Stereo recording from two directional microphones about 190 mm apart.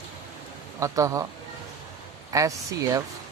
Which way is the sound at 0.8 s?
15° right (ahead or behind).